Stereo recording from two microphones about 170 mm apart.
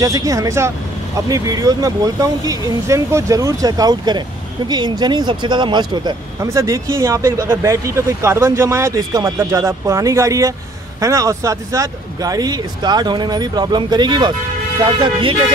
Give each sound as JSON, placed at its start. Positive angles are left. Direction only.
{"t": 0.0, "sound": "speech", "side_deg": -20}